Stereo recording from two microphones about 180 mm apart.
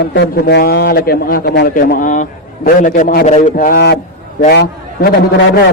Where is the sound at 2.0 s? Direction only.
45° left (ahead or behind).